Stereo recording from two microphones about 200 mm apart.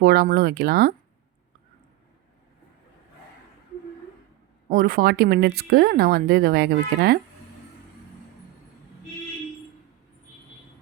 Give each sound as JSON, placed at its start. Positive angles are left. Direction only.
{"t": 0.0, "sound": "speech", "side_deg": -50}
{"t": 4.7, "sound": "speech", "side_deg": -45}